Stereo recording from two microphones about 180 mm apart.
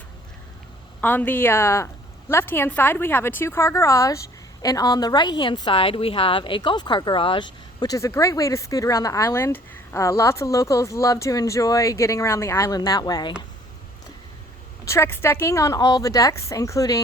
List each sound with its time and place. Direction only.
1.0 s a woman's voice: 10° left (ahead or behind)
14.8 s a woman's voice: 15° left (ahead or behind)